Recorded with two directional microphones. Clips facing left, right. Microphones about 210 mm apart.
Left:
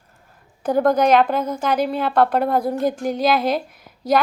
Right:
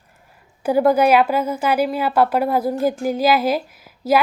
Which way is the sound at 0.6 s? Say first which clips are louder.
Right 2 dB; 10° right (ahead or behind).